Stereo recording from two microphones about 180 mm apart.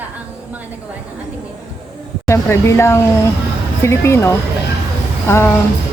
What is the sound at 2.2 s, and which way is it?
Speech, 15° left (ahead or behind).